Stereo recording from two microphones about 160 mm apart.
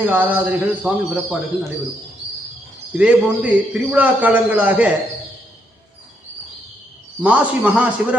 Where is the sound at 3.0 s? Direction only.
10° right (ahead or behind).